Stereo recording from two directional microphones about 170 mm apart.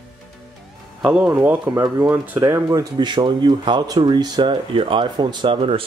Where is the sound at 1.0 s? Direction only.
5° right (ahead or behind).